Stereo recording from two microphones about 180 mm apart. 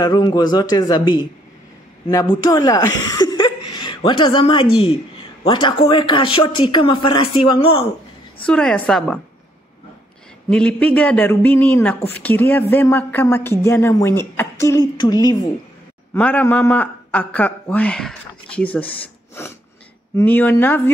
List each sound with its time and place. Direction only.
0.0 s speech: 20° left (ahead or behind)
8.5 s a woman's voice: 5° left (ahead or behind)
10.5 s a man's voice: 5° left (ahead or behind)
16.1 s a man's voice: 10° left (ahead or behind)
20.2 s a man's voice: 10° left (ahead or behind)